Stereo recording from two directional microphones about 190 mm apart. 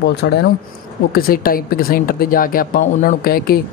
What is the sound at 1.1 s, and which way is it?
Speech, 50° left (ahead or behind).